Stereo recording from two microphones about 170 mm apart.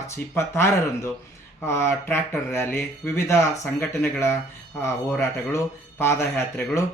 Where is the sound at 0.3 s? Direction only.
15° left (ahead or behind).